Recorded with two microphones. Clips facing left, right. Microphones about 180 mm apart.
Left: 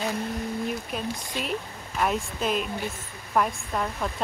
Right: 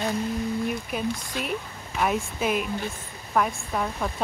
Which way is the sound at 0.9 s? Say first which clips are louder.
Right 2 dB; centre (ahead or behind).